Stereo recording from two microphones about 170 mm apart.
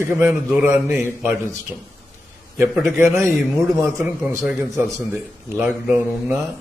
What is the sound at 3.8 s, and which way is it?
A man's voice, 15° right (ahead or behind).